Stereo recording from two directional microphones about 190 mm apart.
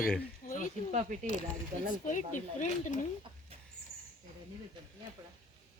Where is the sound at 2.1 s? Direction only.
40° left (ahead or behind).